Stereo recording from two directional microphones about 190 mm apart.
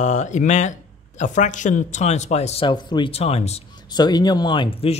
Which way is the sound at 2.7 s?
25° left (ahead or behind).